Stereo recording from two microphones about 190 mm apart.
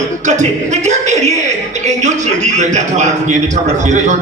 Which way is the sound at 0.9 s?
35° right (ahead or behind).